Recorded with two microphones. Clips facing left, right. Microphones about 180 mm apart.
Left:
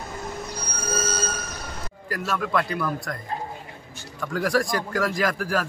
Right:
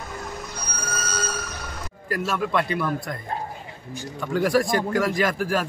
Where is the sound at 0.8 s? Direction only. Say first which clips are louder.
Left 4 dB; 25° left (ahead or behind).